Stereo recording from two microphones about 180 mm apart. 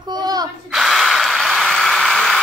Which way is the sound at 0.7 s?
Centre (ahead or behind).